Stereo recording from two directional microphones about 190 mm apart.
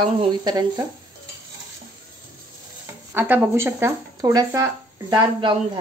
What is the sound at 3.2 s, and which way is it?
A woman's voice, 10° right (ahead or behind).